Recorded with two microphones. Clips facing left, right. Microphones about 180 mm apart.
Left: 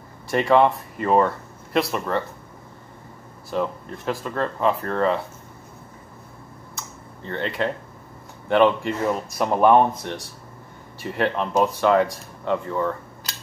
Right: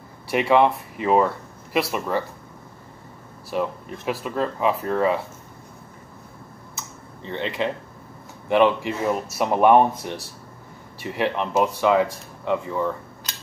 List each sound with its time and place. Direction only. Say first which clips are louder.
0.3 s speech: left 1 dB; 5° right (ahead or behind)
3.4 s speech: even; 5° right (ahead or behind)
7.2 s speech: even; centre (ahead or behind)